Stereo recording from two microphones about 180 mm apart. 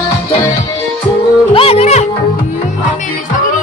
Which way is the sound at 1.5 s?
30° left (ahead or behind).